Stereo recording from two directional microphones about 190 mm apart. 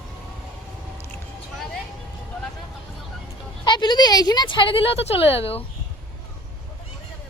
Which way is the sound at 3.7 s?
25° left (ahead or behind).